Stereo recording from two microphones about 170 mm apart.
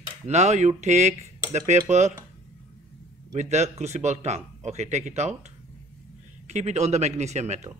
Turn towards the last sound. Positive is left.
turn(degrees=-40)  # may be behind; listen again after turning